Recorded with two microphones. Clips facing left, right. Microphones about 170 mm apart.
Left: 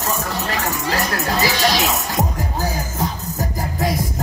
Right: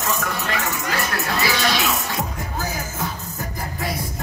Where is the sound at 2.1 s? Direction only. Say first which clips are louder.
Left 5 dB; 40° left (ahead or behind).